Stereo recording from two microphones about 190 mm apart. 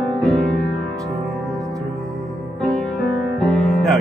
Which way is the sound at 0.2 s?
Centre (ahead or behind).